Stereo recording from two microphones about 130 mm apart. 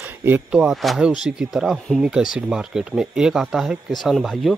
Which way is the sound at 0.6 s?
Centre (ahead or behind).